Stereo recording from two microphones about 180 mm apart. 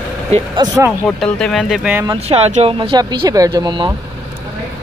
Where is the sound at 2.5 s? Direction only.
30° right (ahead or behind).